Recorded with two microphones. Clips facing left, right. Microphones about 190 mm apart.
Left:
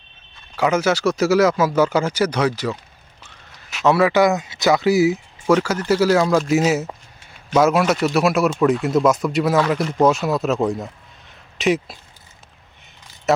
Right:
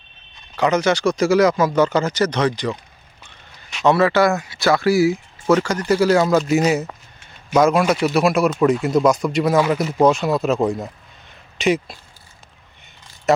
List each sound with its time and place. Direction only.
0.5 s speech: 5° left (ahead or behind)
5.9 s speech: 5° left (ahead or behind)
11.3 s a sound: centre (ahead or behind)